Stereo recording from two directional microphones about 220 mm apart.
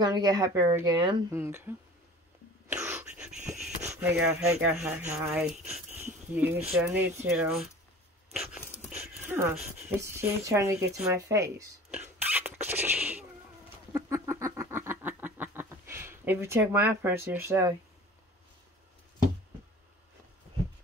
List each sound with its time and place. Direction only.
0.0 s speech: 20° right (ahead or behind)
2.7 s wheeze: 10° right (ahead or behind)
3.9 s speech: 10° right (ahead or behind)
8.3 s a sound: centre (ahead or behind)
9.2 s speech: 10° right (ahead or behind)
13.9 s a sound: 10° right (ahead or behind)